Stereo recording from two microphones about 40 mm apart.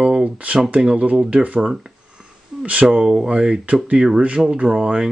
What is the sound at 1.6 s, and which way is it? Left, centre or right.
Speech, centre.